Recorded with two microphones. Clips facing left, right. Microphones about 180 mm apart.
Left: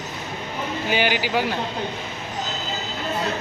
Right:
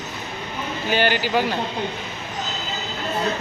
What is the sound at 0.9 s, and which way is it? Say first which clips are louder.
Speech: right 2 dB; 10° left (ahead or behind).